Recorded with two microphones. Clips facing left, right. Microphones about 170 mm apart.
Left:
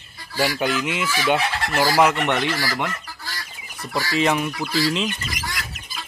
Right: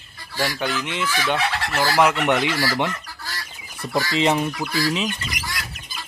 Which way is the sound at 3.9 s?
25° right (ahead or behind).